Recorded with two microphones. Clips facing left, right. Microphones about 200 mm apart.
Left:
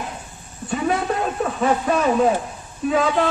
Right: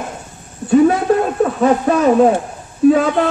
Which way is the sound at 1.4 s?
45° right (ahead or behind).